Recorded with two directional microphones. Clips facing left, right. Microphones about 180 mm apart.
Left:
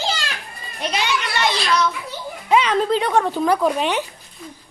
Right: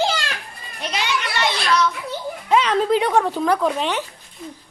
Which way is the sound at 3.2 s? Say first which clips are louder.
Left 1 dB; centre (ahead or behind).